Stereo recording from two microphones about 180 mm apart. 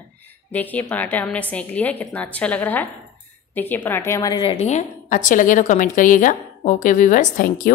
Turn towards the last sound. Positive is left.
turn(degrees=50)  # may be behind; listen again after turning